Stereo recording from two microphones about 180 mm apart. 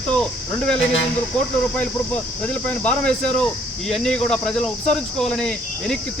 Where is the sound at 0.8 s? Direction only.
90° left.